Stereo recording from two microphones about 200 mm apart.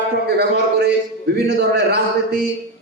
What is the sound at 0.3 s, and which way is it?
A man's voice, 55° right (ahead or behind).